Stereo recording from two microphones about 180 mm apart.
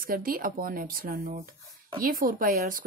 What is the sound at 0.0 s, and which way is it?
Speech, 50° right (ahead or behind).